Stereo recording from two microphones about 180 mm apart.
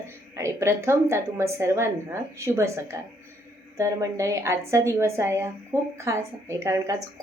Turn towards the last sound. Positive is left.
turn(degrees=-15)  # may be behind; listen again after turning